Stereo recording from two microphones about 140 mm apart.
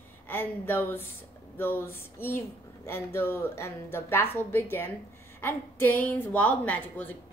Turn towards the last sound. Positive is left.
turn(degrees=10)  # may be behind; listen again after turning